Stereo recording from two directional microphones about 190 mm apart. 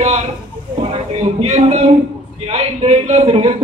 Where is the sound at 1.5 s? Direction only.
35° right (ahead or behind).